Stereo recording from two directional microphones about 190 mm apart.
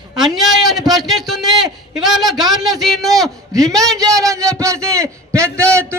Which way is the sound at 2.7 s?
Centre (ahead or behind).